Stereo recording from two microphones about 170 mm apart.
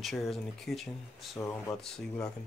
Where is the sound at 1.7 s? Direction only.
5° left (ahead or behind).